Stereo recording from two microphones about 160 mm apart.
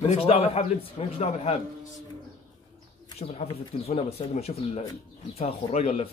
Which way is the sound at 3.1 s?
40° left (ahead or behind).